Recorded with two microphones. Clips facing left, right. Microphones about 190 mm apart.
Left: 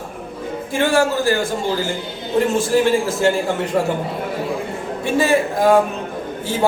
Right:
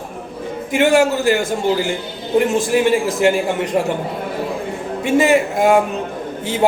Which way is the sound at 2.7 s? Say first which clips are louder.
Right 1 dB; 15° right (ahead or behind).